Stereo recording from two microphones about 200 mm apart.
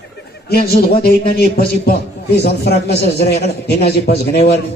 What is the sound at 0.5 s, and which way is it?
A man's voice, 50° left (ahead or behind).